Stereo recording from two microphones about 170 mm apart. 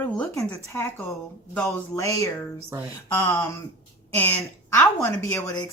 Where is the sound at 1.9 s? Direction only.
20° left (ahead or behind).